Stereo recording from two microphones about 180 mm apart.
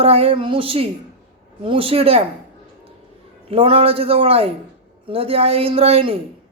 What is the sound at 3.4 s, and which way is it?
Speech, 30° right (ahead or behind).